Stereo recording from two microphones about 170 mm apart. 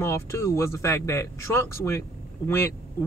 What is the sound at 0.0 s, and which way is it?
Speech, 15° left (ahead or behind).